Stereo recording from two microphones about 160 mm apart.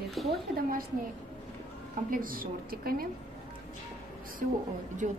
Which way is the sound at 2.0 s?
60° right (ahead or behind).